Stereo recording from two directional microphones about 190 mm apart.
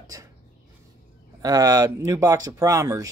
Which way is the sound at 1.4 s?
20° right (ahead or behind).